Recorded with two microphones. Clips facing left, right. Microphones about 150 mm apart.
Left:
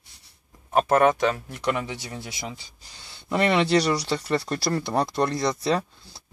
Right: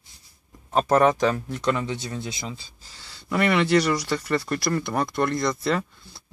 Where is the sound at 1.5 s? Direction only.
10° left (ahead or behind).